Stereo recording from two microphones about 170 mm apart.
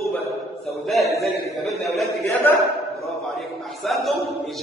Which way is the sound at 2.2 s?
15° left (ahead or behind).